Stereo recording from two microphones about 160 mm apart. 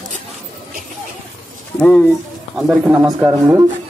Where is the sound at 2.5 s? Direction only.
5° right (ahead or behind).